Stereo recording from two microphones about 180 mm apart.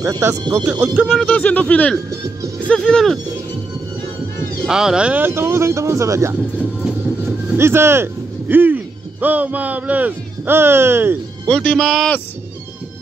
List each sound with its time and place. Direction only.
0.0 s speech: 15° right (ahead or behind)
1.0 s speech: centre (ahead or behind)
4.6 s speech: 5° right (ahead or behind)
7.5 s speech: 15° right (ahead or behind)
11.4 s speech: 5° left (ahead or behind)